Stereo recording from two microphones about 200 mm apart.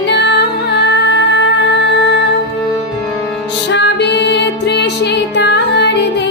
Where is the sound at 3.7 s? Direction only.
60° left (ahead or behind).